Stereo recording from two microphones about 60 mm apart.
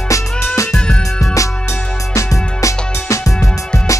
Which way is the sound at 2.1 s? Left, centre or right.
Left.